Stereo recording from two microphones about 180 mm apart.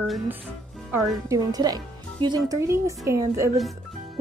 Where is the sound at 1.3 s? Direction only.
20° right (ahead or behind).